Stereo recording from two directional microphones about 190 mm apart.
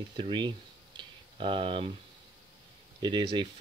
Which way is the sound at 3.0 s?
25° right (ahead or behind).